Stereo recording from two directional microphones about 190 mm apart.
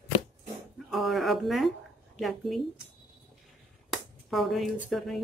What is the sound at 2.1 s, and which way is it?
Speech, centre (ahead or behind).